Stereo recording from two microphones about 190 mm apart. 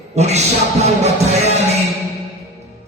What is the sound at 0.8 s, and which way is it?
Music, 35° right (ahead or behind).